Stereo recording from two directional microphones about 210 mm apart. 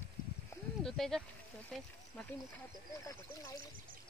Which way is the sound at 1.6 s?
5° left (ahead or behind).